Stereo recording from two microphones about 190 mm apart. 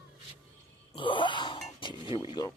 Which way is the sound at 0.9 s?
25° left (ahead or behind).